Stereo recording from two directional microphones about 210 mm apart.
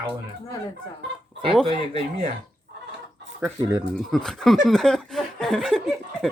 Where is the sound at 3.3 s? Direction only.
5° right (ahead or behind).